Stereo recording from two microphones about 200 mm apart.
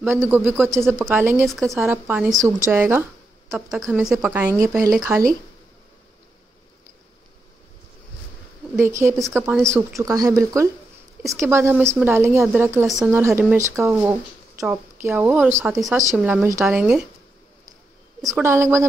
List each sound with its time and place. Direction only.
0.1 s speech: 10° right (ahead or behind)
1.5 s speech: centre (ahead or behind)
3.7 s speech: centre (ahead or behind)
8.7 s speech: 10° right (ahead or behind)
9.2 s speech: centre (ahead or behind)
9.9 s a woman's voice: 15° right (ahead or behind)
18.4 s speech: 15° right (ahead or behind)